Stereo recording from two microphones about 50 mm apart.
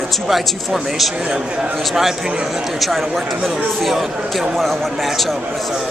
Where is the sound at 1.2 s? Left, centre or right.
Right.